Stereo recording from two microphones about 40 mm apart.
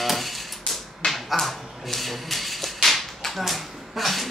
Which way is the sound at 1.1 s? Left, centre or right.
Centre.